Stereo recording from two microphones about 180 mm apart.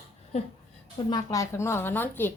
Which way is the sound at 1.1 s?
20° left (ahead or behind).